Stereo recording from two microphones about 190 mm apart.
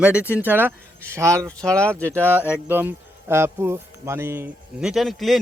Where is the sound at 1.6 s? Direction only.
5° left (ahead or behind).